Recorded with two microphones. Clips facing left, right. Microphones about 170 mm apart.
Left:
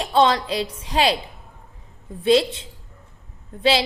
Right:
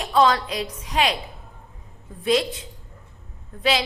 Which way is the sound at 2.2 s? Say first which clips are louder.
Left 4 dB; 30° left (ahead or behind).